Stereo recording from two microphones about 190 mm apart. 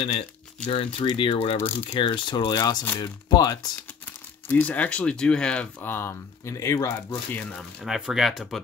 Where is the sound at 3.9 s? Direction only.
10° left (ahead or behind).